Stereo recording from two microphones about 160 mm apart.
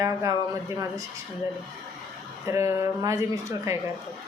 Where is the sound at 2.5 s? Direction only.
20° right (ahead or behind).